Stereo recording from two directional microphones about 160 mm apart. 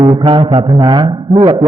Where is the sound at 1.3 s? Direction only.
35° right (ahead or behind).